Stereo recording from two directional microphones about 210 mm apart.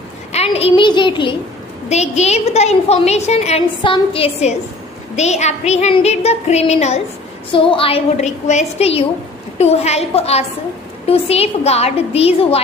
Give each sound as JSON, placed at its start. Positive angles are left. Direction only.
{"t": 0.3, "sound": "a woman's voice", "side_deg": 30}